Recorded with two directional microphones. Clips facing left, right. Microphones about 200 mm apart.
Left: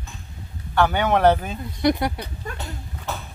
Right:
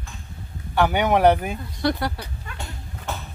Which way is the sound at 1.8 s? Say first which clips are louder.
Left 3 dB; 20° left (ahead or behind).